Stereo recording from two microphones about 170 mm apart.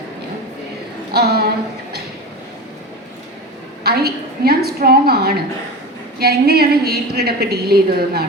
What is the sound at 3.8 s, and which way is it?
A woman's voice, 65° right (ahead or behind).